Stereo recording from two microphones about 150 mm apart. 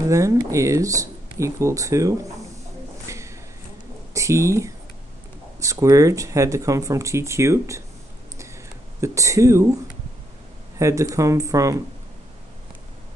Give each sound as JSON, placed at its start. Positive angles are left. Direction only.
{"t": 0.1, "sound": "speech", "side_deg": -20}
{"t": 3.1, "sound": "a sound", "side_deg": -20}
{"t": 4.1, "sound": "speech", "side_deg": -20}
{"t": 9.0, "sound": "speech", "side_deg": -20}
{"t": 10.8, "sound": "speech", "side_deg": -20}